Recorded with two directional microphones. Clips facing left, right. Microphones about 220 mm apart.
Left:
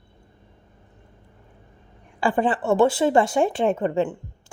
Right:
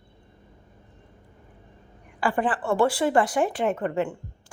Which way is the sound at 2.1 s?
25° left (ahead or behind).